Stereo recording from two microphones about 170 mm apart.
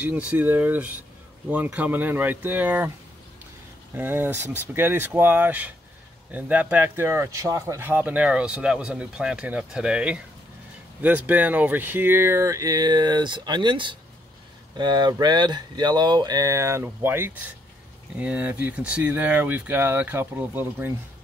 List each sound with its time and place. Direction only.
0.0 s speech: 10° right (ahead or behind)
3.9 s speech: 10° right (ahead or behind)